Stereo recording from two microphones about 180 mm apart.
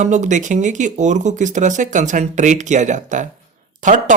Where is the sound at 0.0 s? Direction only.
45° right (ahead or behind).